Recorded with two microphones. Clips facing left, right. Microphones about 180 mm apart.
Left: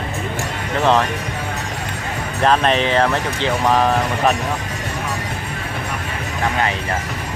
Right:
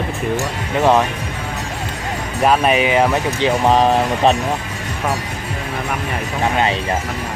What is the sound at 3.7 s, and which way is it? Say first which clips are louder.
Speech: right 2 dB; 25° right (ahead or behind).